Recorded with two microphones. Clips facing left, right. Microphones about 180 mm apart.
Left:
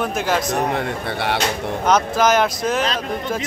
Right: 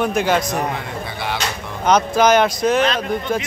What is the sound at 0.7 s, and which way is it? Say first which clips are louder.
Speech: left 4 dB; 65° left (ahead or behind).